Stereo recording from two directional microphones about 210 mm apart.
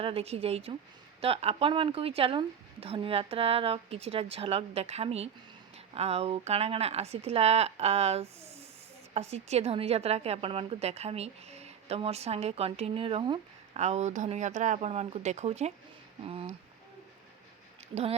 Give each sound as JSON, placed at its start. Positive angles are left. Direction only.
{"t": 0.0, "sound": "a woman's voice", "side_deg": -30}